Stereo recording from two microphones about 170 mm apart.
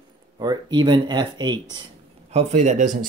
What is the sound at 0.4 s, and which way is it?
Speech, 25° right (ahead or behind).